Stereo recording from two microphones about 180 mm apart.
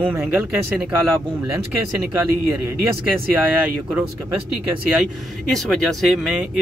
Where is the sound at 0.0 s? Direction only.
10° right (ahead or behind).